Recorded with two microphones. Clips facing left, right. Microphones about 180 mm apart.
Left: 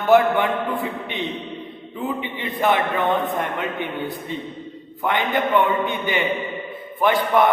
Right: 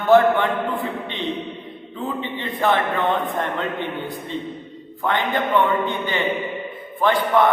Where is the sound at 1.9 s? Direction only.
15° left (ahead or behind).